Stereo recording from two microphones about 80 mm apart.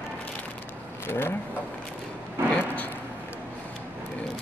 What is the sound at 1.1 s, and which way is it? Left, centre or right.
Speech, left.